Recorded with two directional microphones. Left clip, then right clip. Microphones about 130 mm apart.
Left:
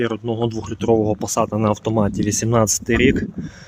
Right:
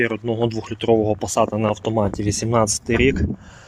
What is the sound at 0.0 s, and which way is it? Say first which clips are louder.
Speech: right 1 dB; 20° left (ahead or behind).